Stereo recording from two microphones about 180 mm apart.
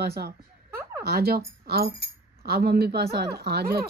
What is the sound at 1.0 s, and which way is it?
Speech, 60° right (ahead or behind).